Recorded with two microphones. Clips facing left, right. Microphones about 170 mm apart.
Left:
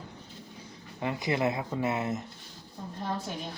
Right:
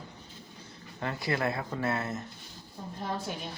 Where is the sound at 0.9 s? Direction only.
15° left (ahead or behind).